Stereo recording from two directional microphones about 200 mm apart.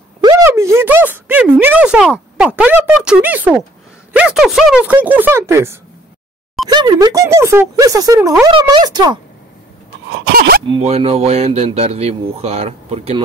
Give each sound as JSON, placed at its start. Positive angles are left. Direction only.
{"t": 0.2, "sound": "a sound", "side_deg": -15}
{"t": 4.1, "sound": "speech", "side_deg": -5}
{"t": 10.7, "sound": "speech", "side_deg": -30}